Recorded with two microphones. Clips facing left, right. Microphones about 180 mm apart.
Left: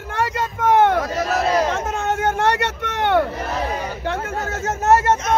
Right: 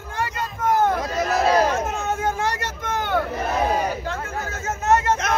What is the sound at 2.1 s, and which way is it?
Vehicle, 75° left (ahead or behind).